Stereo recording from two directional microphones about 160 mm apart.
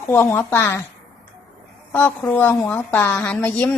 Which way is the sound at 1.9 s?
10° left (ahead or behind).